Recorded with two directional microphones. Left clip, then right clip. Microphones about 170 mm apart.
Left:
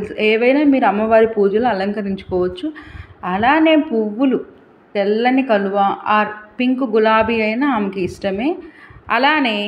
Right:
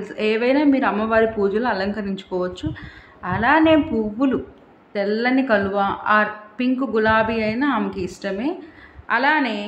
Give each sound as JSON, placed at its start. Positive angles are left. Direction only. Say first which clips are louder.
{"t": 0.0, "sound": "a woman's voice", "louder": "left 6 dB", "side_deg": 15}